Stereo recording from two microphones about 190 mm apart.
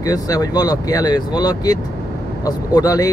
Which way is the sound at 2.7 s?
20° left (ahead or behind).